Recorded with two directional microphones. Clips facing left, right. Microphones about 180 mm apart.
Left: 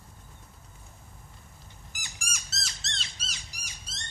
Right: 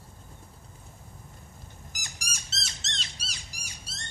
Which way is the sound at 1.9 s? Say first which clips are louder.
Left 2 dB; 40° right (ahead or behind).